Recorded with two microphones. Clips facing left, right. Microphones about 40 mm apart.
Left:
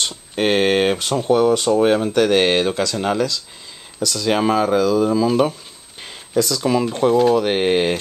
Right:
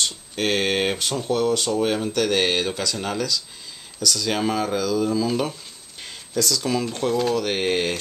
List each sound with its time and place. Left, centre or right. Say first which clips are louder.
0.0 s speech: left 4 dB; centre